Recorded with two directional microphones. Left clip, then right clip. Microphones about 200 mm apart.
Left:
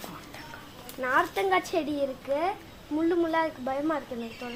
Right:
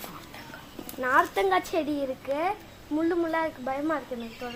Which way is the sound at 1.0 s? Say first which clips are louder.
Right 2 dB; 35° right (ahead or behind).